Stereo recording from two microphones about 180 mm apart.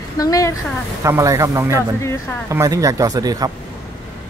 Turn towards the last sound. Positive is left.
turn(degrees=-20)  # may be behind; listen again after turning